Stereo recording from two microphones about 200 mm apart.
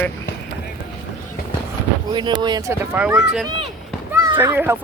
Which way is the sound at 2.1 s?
20° right (ahead or behind).